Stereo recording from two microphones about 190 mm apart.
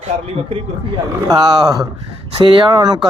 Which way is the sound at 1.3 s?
20° right (ahead or behind).